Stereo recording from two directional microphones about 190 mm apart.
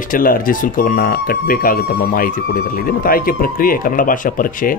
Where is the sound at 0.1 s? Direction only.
45° left (ahead or behind).